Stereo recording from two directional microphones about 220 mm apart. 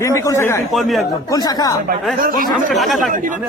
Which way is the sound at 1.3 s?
15° left (ahead or behind).